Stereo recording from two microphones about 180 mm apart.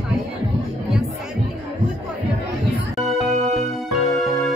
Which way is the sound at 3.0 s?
Centre (ahead or behind).